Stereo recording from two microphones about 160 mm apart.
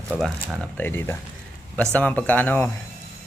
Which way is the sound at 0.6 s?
10° left (ahead or behind).